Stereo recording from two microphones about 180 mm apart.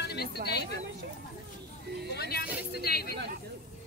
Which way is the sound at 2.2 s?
60° left (ahead or behind).